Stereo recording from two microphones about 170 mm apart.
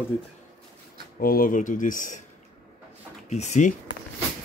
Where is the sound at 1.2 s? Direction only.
60° left (ahead or behind).